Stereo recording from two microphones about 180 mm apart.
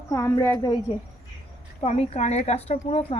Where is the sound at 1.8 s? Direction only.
35° left (ahead or behind).